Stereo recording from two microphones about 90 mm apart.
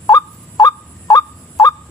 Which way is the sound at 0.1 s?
40° left (ahead or behind).